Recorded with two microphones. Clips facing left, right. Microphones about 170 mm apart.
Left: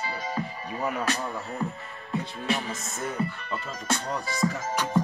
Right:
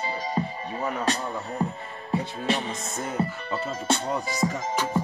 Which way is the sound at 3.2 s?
30° right (ahead or behind).